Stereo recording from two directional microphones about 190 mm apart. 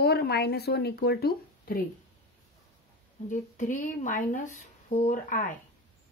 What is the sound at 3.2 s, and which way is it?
A woman's voice, 40° left (ahead or behind).